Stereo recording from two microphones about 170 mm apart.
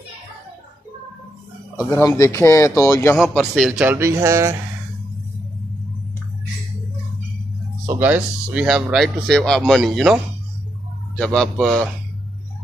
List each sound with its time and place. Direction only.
1.9 s speech: 20° left (ahead or behind)
3.2 s a man's voice: centre (ahead or behind); by 4.6 s 15° right (ahead or behind)
7.8 s a man's voice: 15° right (ahead or behind)